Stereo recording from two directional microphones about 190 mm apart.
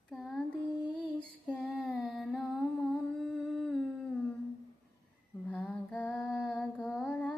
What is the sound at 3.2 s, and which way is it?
Humming, centre (ahead or behind).